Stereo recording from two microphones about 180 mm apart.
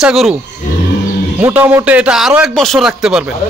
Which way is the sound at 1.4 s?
10° right (ahead or behind).